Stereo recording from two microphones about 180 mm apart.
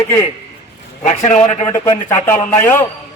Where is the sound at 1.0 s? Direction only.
45° left (ahead or behind).